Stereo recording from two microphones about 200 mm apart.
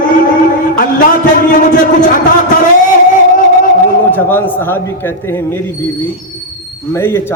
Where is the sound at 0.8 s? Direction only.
45° left (ahead or behind).